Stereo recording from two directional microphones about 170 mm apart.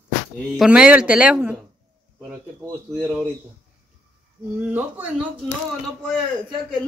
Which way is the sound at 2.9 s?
Centre (ahead or behind).